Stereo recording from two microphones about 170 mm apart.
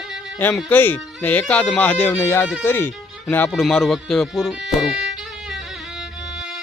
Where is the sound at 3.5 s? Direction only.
Centre (ahead or behind).